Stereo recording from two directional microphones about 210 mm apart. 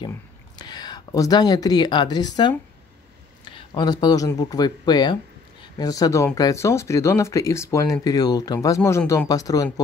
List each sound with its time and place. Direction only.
0.6 s speech: 20° left (ahead or behind)